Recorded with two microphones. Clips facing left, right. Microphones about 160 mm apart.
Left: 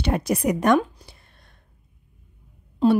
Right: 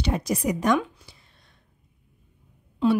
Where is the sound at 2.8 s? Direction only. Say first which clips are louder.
Left 3 dB; 35° left (ahead or behind).